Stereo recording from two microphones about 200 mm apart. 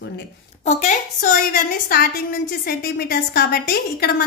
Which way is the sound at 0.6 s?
35° left (ahead or behind).